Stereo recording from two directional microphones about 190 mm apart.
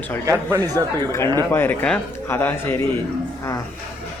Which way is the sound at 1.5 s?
10° left (ahead or behind).